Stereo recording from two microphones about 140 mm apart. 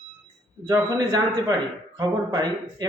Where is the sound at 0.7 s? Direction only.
30° right (ahead or behind).